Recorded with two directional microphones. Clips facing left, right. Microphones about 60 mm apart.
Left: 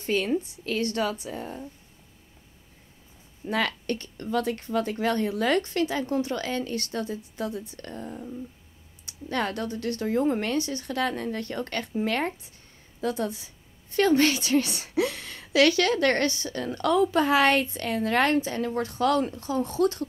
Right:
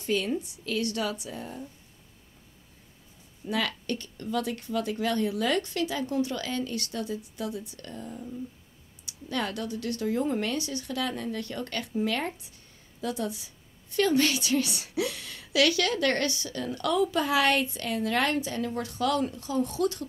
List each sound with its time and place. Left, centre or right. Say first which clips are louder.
0.0 s a woman's voice: left 3 dB; left
3.4 s a woman's voice: left 3 dB; left